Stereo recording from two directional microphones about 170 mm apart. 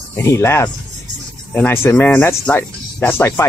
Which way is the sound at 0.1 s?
15° left (ahead or behind).